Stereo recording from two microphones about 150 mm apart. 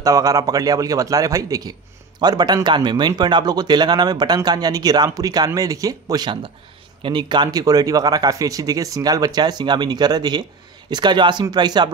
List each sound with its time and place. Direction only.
0.0 s a man's voice: 20° right (ahead or behind)